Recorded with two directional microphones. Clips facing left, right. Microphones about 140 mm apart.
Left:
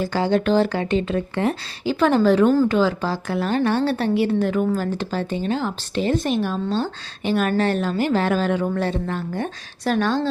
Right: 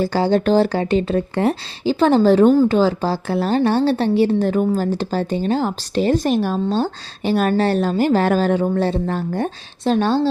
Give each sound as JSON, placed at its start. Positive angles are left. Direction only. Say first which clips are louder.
{"t": 0.0, "sound": "a woman's voice", "louder": "right 3 dB", "side_deg": -35}